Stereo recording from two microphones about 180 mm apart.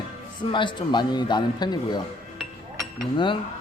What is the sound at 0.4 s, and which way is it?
Speech, 25° left (ahead or behind).